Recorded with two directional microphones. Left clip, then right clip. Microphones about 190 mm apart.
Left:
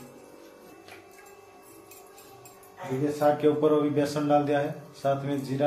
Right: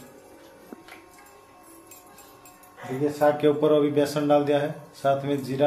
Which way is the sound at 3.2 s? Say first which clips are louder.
Right 2 dB; 35° right (ahead or behind).